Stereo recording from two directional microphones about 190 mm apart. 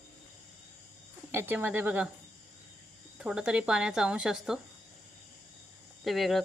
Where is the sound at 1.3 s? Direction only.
10° right (ahead or behind).